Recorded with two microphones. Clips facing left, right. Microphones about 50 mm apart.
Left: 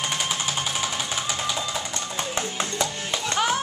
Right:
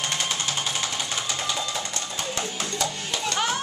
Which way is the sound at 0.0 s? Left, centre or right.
Centre.